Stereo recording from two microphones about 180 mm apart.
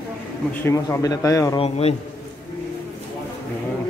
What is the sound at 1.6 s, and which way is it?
Speech, 35° left (ahead or behind).